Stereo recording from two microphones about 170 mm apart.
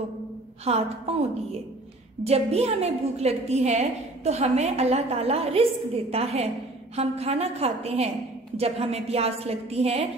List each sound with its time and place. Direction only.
0.7 s a woman's voice: 40° right (ahead or behind)